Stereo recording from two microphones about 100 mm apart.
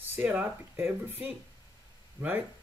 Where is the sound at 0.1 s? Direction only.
15° right (ahead or behind).